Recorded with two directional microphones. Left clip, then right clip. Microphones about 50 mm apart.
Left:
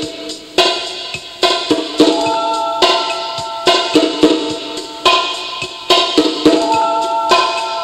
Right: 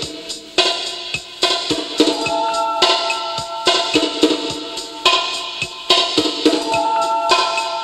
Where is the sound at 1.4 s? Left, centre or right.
Centre.